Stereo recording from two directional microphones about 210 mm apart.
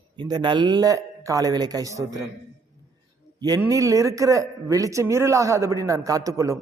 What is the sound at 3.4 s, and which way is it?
A man's voice, 15° right (ahead or behind).